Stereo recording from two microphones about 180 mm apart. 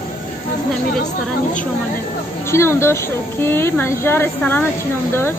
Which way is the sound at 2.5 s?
15° left (ahead or behind).